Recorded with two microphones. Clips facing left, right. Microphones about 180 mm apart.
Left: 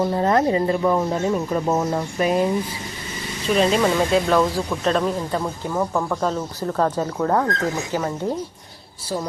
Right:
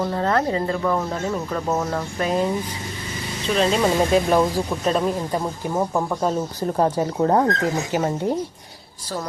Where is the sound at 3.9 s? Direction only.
15° right (ahead or behind).